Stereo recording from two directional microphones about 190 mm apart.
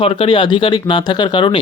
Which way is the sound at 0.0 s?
30° left (ahead or behind).